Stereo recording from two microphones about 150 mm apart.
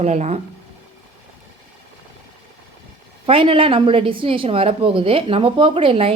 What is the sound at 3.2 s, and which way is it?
A woman's voice, 35° right (ahead or behind).